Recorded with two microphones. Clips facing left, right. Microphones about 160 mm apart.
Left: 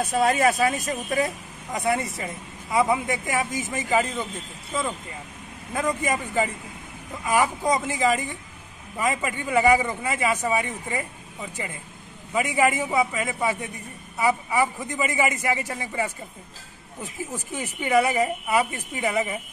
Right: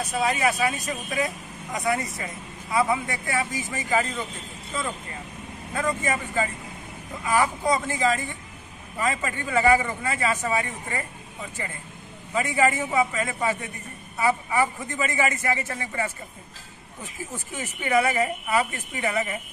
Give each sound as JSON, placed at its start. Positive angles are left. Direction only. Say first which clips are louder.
{"t": 0.0, "sound": "speech", "louder": "left 4 dB", "side_deg": 50}
{"t": 1.8, "sound": "a man's voice", "louder": "left 2 dB", "side_deg": 25}
{"t": 5.8, "sound": "a man's voice", "louder": "left 1 dB", "side_deg": 15}
{"t": 12.4, "sound": "a man's voice", "louder": "left 1 dB", "side_deg": 15}
{"t": 17.6, "sound": "a man's voice", "louder": "left 2 dB", "side_deg": 10}